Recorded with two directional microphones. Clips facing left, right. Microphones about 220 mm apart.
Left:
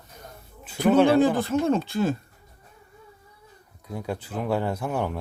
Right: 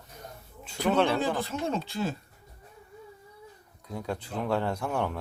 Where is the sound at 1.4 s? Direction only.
50° left (ahead or behind).